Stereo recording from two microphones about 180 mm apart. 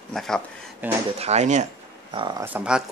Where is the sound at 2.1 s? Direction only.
25° right (ahead or behind).